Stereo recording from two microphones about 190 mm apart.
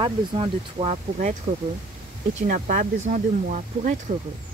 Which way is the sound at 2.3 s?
40° right (ahead or behind).